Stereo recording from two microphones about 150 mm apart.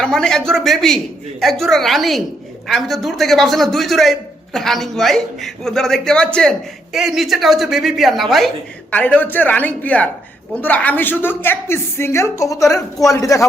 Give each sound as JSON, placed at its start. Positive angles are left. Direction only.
{"t": 0.0, "sound": "a man's voice", "side_deg": 5}